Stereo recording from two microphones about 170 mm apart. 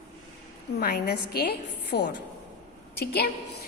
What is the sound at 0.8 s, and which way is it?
A woman's voice, 70° left (ahead or behind).